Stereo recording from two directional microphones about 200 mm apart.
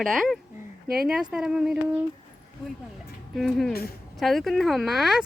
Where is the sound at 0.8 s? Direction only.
50° right (ahead or behind).